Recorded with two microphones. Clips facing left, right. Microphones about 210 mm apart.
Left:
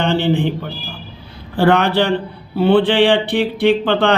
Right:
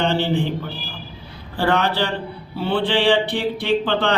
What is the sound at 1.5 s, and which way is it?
Speech, 60° left (ahead or behind).